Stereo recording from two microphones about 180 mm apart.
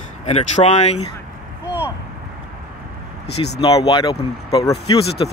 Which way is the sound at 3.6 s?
30° left (ahead or behind).